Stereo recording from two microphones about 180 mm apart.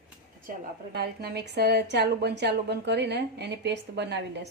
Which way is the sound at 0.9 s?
60° right (ahead or behind).